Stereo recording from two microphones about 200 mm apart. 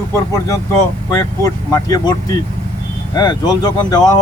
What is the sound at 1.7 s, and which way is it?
Speech, 20° left (ahead or behind).